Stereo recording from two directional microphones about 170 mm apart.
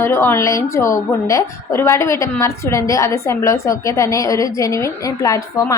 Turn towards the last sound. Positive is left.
turn(degrees=20)  # may be behind; listen again after turning